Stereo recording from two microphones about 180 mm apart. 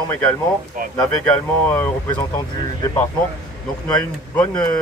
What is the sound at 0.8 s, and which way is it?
Speech, 50° right (ahead or behind).